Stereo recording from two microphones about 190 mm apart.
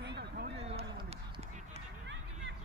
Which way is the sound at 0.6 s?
30° right (ahead or behind).